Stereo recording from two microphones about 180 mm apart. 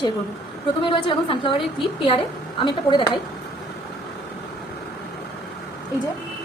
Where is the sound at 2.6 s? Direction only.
25° left (ahead or behind).